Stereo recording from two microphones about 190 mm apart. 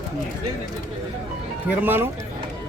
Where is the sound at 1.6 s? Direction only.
10° right (ahead or behind).